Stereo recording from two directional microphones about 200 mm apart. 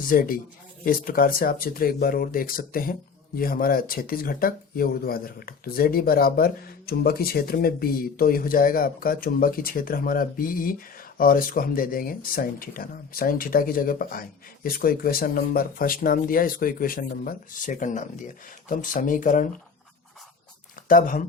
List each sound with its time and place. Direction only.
0.1 s speech: 45° left (ahead or behind)
20.8 s speech: 40° left (ahead or behind)